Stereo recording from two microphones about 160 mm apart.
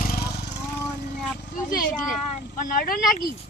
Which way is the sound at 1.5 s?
60° left (ahead or behind).